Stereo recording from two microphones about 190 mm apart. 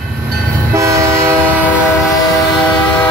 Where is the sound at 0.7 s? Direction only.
15° right (ahead or behind).